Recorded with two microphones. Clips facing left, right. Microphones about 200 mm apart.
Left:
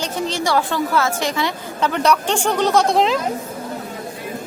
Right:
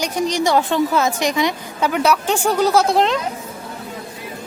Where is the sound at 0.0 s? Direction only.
15° right (ahead or behind).